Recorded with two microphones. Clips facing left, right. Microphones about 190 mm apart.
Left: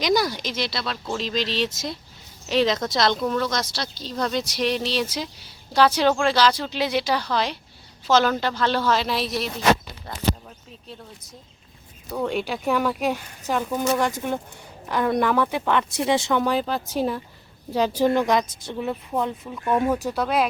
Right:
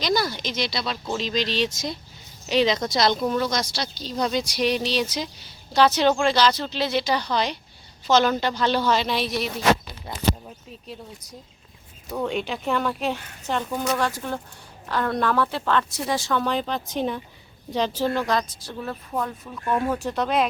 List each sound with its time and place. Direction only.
0.0 s a woman's voice: 15° left (ahead or behind)
12.1 s a woman's voice: centre (ahead or behind); by 16.4 s 25° left (ahead or behind)
16.4 s a woman's voice: 5° left (ahead or behind)
20.1 s speech: 5° left (ahead or behind)